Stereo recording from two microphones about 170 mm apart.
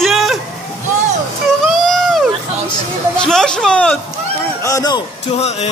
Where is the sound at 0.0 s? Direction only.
Centre (ahead or behind).